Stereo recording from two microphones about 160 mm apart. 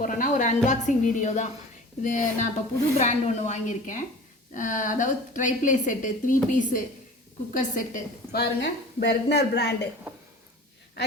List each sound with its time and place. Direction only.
0.0 s a woman's voice: 55° left (ahead or behind); by 9.7 s 90° left